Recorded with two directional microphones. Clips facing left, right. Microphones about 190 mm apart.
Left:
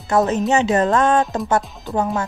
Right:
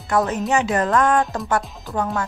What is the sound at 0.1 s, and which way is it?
Speech, 25° left (ahead or behind).